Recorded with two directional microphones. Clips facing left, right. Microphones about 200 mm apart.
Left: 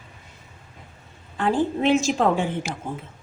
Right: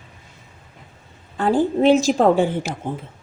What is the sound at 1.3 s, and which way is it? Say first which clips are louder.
A woman's voice: right 4 dB; 40° right (ahead or behind).